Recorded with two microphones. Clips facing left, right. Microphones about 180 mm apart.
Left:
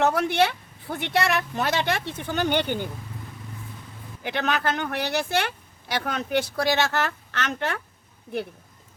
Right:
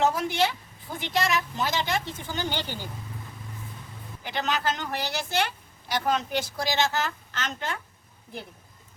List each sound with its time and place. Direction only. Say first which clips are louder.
0.0 s speech: left 3 dB; 65° left (ahead or behind)
4.2 s speech: left 3 dB; 60° left (ahead or behind)